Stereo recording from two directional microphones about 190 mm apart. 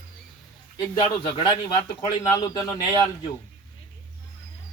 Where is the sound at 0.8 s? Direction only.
25° left (ahead or behind).